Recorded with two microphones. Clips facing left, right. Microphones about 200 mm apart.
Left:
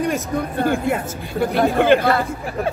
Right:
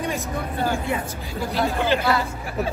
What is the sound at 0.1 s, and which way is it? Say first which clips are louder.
Speech: left 5 dB; 55° left (ahead or behind).